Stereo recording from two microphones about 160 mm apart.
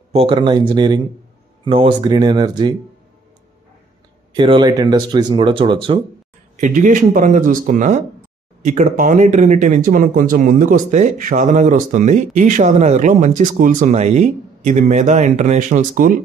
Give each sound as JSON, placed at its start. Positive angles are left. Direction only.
{"t": 0.1, "sound": "speech", "side_deg": -35}
{"t": 4.3, "sound": "speech", "side_deg": -30}
{"t": 6.5, "sound": "speech", "side_deg": -50}